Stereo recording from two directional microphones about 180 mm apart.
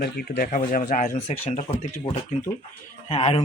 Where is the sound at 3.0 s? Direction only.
35° left (ahead or behind).